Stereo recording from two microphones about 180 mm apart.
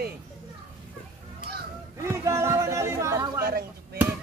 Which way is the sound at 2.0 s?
15° right (ahead or behind).